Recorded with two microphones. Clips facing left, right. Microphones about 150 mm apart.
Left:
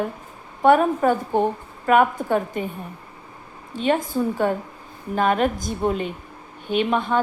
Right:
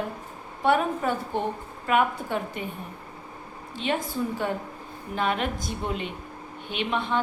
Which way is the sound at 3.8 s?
45° left (ahead or behind).